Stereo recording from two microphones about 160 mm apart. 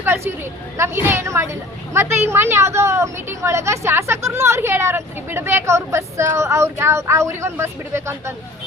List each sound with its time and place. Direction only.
0.0 s a woman's voice: 15° right (ahead or behind)